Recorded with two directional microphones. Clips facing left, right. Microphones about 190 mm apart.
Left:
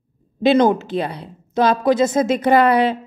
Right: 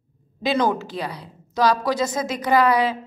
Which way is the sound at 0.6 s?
20° left (ahead or behind).